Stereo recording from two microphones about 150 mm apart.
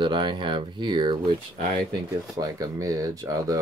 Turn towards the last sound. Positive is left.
turn(degrees=-20)  # may be behind; listen again after turning